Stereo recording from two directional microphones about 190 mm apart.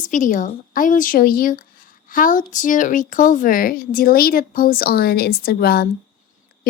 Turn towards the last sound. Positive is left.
turn(degrees=55)  # may be behind; listen again after turning